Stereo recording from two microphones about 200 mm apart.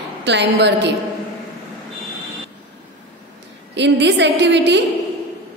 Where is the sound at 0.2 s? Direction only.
60° right (ahead or behind).